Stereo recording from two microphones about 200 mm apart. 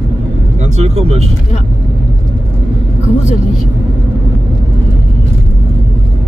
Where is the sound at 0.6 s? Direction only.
30° right (ahead or behind).